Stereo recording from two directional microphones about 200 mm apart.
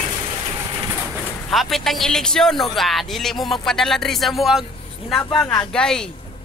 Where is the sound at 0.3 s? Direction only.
20° right (ahead or behind).